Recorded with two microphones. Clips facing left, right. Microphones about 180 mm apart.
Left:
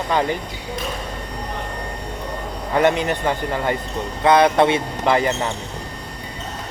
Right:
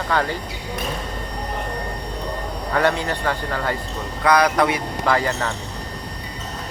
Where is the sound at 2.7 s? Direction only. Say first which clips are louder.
Left 3 dB; 20° left (ahead or behind).